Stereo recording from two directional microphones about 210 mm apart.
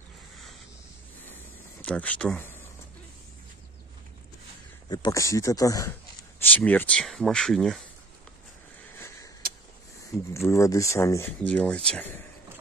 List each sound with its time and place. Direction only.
1.8 s speech: 5° left (ahead or behind)
4.8 s speech: 20° left (ahead or behind); by 7.8 s centre (ahead or behind)
8.9 s a sound: 10° left (ahead or behind)
10.3 s speech: 15° left (ahead or behind)